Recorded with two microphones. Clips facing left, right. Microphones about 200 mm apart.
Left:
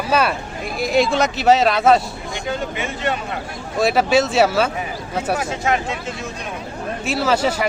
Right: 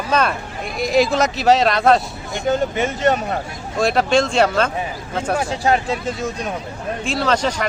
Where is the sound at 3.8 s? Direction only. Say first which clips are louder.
Even; 5° left (ahead or behind).